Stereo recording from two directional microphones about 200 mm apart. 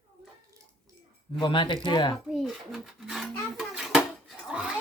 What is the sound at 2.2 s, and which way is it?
A child's voice, centre (ahead or behind).